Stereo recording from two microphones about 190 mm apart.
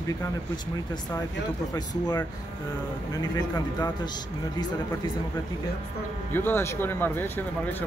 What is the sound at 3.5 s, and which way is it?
Speech, 20° left (ahead or behind).